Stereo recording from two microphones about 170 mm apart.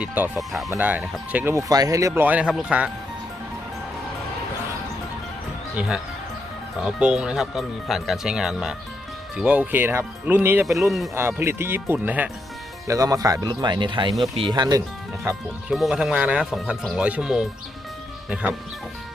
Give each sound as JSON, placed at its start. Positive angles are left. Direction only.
{"t": 0.0, "sound": "speech", "side_deg": -10}
{"t": 6.8, "sound": "speech", "side_deg": -5}
{"t": 10.7, "sound": "speech", "side_deg": 0}
{"t": 11.1, "sound": "speech", "side_deg": -15}
{"t": 12.9, "sound": "speech", "side_deg": -20}
{"t": 15.7, "sound": "speech", "side_deg": -5}